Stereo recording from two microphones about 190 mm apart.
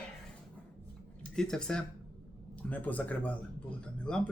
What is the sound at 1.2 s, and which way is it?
Speech, 5° left (ahead or behind).